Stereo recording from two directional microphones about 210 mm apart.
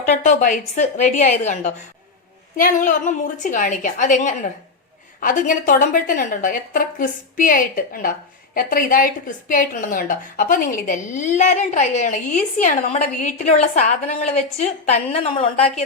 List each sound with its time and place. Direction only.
0.0 s a woman's voice: 35° left (ahead or behind)